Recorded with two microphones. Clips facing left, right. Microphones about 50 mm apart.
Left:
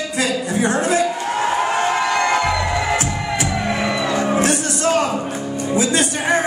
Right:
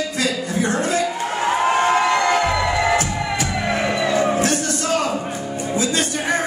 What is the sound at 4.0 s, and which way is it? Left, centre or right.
Music, centre.